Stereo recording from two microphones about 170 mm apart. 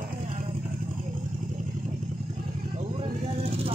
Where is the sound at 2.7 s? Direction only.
35° right (ahead or behind).